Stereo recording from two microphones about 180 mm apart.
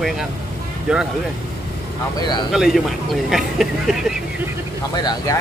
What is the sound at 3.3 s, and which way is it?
Speech, centre (ahead or behind).